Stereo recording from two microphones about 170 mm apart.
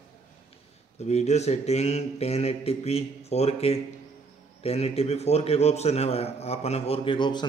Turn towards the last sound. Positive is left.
turn(degrees=25)  # may be behind; listen again after turning